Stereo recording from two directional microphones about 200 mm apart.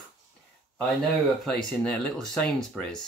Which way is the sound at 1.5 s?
Centre (ahead or behind).